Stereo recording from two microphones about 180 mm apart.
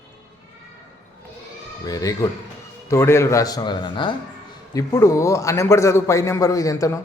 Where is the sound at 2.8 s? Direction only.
15° left (ahead or behind).